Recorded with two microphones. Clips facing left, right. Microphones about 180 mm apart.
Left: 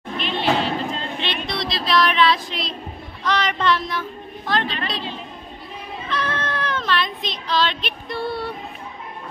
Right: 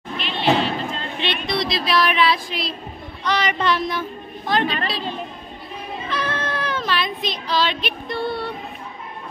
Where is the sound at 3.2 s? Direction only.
5° right (ahead or behind).